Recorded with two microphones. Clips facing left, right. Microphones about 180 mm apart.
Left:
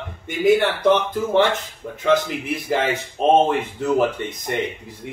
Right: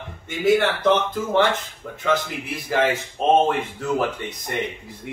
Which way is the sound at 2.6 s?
20° left (ahead or behind).